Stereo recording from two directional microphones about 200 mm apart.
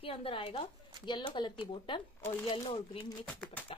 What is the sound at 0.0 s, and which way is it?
Speech, 25° left (ahead or behind).